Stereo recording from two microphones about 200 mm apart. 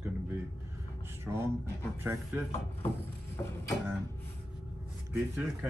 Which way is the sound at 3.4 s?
15° left (ahead or behind).